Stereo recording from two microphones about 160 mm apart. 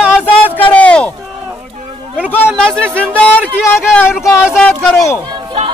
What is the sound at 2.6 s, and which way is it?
Speech, 5° left (ahead or behind).